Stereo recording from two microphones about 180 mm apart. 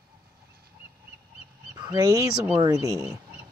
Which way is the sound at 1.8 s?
20° right (ahead or behind).